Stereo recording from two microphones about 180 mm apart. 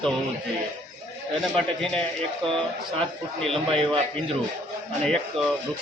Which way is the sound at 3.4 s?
5° left (ahead or behind).